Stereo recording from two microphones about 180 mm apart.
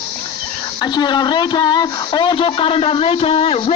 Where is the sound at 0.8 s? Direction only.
25° left (ahead or behind).